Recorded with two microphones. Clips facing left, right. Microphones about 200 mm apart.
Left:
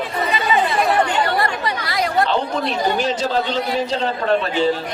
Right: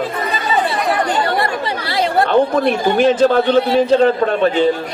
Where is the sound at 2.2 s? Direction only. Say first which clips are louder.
Right 9 dB; 55° right (ahead or behind).